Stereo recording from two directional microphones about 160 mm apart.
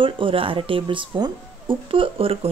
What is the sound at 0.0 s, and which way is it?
Speech, 35° right (ahead or behind).